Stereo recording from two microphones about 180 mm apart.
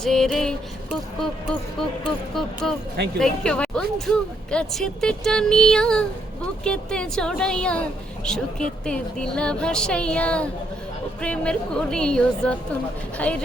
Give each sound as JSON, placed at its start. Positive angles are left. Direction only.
{"t": 0.0, "sound": "music", "side_deg": 5}
{"t": 2.6, "sound": "a woman's voice", "side_deg": 5}